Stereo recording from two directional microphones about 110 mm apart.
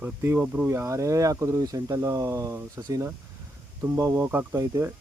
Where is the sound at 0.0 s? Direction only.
20° right (ahead or behind).